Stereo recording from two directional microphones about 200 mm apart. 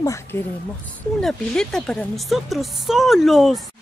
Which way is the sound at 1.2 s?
5° left (ahead or behind).